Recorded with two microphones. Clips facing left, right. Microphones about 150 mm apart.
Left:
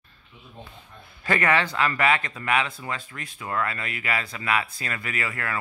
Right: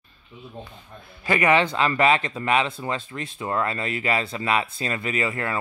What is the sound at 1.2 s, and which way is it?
Speech, 15° right (ahead or behind).